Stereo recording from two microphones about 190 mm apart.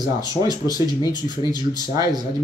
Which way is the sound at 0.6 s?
20° left (ahead or behind).